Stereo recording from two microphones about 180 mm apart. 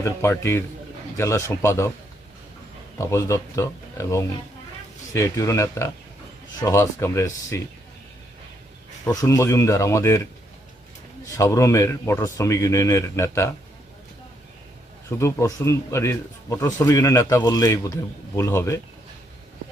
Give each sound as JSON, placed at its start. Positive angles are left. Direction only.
{"t": 0.0, "sound": "speech", "side_deg": 15}
{"t": 3.0, "sound": "speech", "side_deg": 15}
{"t": 9.0, "sound": "speech", "side_deg": 20}
{"t": 11.3, "sound": "speech", "side_deg": 15}
{"t": 15.2, "sound": "speech", "side_deg": 15}